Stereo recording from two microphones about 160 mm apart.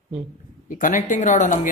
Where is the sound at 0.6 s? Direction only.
55° left (ahead or behind).